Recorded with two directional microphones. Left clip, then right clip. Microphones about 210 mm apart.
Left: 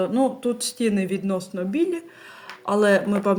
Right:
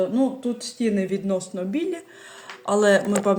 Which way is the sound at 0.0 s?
30° left (ahead or behind).